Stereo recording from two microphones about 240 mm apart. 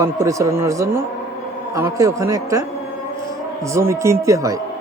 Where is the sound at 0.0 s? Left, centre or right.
Centre.